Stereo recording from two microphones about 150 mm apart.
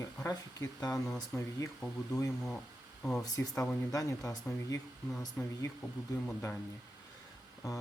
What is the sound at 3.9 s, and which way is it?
Speech, 20° left (ahead or behind).